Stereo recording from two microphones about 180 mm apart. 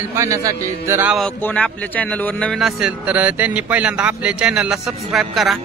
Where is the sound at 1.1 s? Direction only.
5° left (ahead or behind).